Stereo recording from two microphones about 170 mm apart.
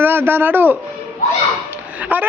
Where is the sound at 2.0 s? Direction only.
10° right (ahead or behind).